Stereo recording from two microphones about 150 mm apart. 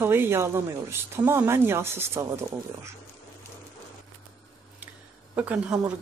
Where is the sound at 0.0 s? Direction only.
15° right (ahead or behind).